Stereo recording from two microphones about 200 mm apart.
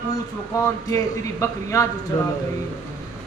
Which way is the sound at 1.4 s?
15° left (ahead or behind).